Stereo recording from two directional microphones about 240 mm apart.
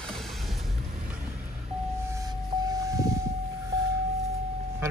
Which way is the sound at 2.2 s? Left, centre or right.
Centre.